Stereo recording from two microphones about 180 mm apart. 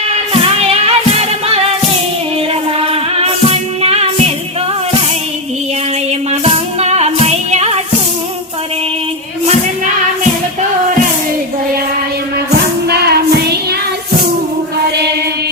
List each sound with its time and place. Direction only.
0.6 s music: 35° right (ahead or behind)
2.8 s music: 35° right (ahead or behind)
6.4 s music: 35° right (ahead or behind)
12.9 s music: 65° right (ahead or behind)